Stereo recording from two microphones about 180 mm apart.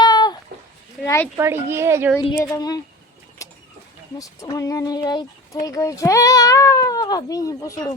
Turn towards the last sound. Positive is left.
turn(degrees=20)  # may be behind; listen again after turning